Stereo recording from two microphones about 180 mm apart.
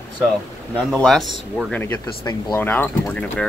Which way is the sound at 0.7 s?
5° left (ahead or behind).